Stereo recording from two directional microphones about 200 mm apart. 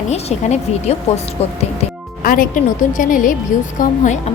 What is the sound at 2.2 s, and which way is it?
A woman's voice, 45° left (ahead or behind).